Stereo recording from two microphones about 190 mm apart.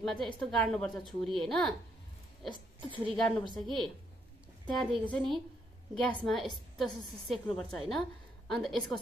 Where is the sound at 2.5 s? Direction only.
25° right (ahead or behind).